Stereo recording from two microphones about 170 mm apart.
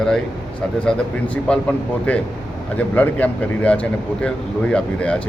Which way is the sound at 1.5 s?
5° left (ahead or behind).